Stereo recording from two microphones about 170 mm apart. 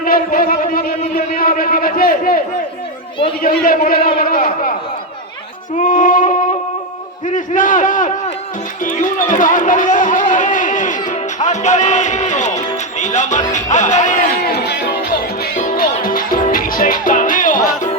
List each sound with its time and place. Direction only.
0.0 s a sound: 55° left (ahead or behind)
3.4 s a man's voice: 55° left (ahead or behind)
5.7 s speech: 50° left (ahead or behind)
7.3 s a man's voice: 50° left (ahead or behind)
8.8 s run: 50° left (ahead or behind)
14.5 s music: 75° left (ahead or behind)
14.8 s music: 55° left (ahead or behind)
17.7 s a sound: 50° left (ahead or behind)